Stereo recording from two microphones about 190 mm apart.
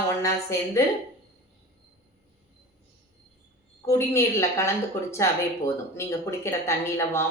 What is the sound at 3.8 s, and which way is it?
Speech, 15° left (ahead or behind).